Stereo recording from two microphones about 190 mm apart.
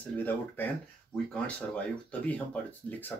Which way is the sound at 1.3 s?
5° left (ahead or behind).